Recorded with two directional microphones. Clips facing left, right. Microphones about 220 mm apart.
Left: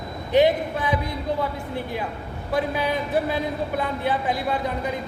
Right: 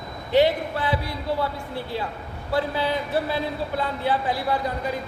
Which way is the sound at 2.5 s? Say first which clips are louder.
Even; 15° left (ahead or behind).